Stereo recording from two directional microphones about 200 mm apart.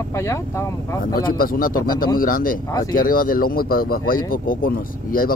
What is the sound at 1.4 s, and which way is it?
Speech, 45° left (ahead or behind).